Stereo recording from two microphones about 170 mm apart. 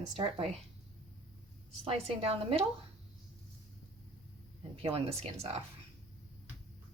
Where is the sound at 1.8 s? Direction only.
35° right (ahead or behind).